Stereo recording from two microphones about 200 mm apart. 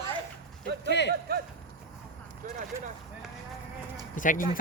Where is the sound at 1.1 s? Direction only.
50° right (ahead or behind).